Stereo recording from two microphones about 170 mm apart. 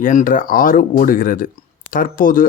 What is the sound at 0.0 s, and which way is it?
Speech, 50° left (ahead or behind).